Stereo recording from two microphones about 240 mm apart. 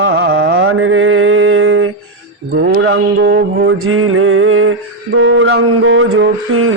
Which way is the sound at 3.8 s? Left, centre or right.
Right.